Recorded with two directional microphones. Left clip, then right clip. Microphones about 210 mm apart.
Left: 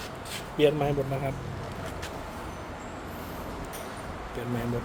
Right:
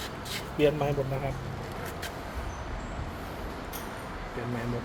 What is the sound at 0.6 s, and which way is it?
Speech, 15° left (ahead or behind).